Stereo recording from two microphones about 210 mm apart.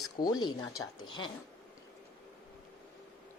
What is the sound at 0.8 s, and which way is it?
Speech, 75° left (ahead or behind).